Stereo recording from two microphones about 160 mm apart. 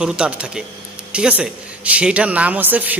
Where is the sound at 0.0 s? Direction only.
5° right (ahead or behind).